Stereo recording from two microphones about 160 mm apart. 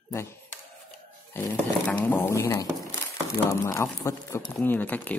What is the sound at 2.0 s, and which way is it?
Speech, 15° left (ahead or behind).